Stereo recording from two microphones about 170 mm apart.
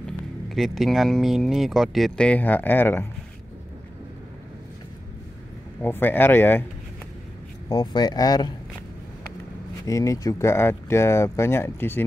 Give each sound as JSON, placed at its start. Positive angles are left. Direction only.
{"t": 0.6, "sound": "speech", "side_deg": 0}
{"t": 5.8, "sound": "speech", "side_deg": 10}
{"t": 7.7, "sound": "speech", "side_deg": 25}
{"t": 9.8, "sound": "speech", "side_deg": 20}